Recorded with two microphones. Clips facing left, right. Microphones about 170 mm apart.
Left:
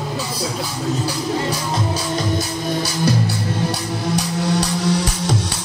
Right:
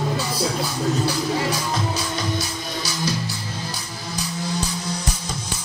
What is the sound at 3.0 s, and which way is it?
Music, 65° left (ahead or behind).